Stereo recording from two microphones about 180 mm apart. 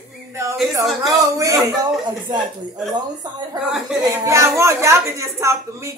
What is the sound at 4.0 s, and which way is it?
A woman's voice, 20° right (ahead or behind).